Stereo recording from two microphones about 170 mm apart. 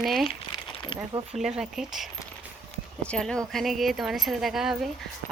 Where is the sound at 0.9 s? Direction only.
30° left (ahead or behind).